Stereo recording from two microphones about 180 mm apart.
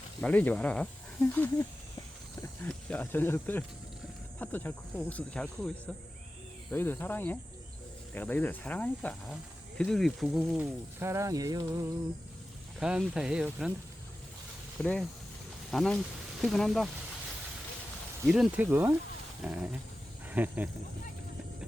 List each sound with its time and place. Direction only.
0.2 s speech: 5° left (ahead or behind)
2.6 s speech: 10° left (ahead or behind)
6.7 s speech: 10° left (ahead or behind)
11.0 s cricket: 15° right (ahead or behind)
12.8 s speech: 5° right (ahead or behind)
14.8 s speech: 5° left (ahead or behind)
18.3 s speech: 5° right (ahead or behind)